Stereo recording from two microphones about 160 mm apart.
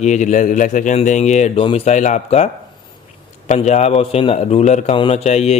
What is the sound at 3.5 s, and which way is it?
Speech, 45° left (ahead or behind).